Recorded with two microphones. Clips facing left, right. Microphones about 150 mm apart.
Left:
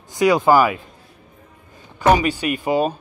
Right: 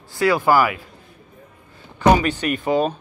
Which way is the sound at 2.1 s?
10° left (ahead or behind).